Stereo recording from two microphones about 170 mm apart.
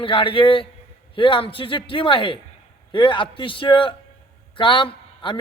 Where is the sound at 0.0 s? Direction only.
30° left (ahead or behind).